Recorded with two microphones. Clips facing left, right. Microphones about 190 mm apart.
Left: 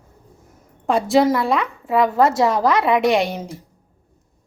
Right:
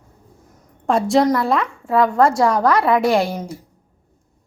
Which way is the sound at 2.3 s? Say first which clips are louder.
Right 1 dB; 25° left (ahead or behind).